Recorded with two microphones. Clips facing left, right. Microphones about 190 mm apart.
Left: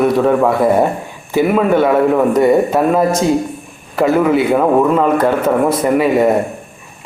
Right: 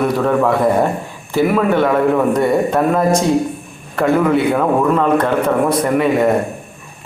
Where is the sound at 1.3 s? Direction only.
15° left (ahead or behind).